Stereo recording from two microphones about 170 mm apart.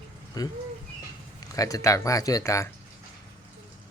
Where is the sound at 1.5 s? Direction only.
20° left (ahead or behind).